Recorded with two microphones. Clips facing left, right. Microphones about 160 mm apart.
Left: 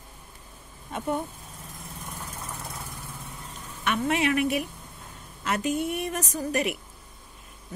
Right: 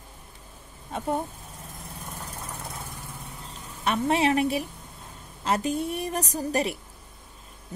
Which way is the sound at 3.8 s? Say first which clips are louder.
Right 2 dB; 35° right (ahead or behind).